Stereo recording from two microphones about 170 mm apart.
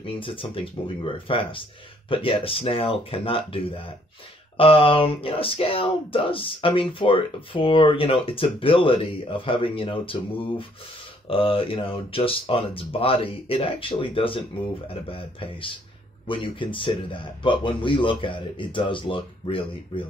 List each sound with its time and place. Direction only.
0.0 s a man's voice: 30° left (ahead or behind)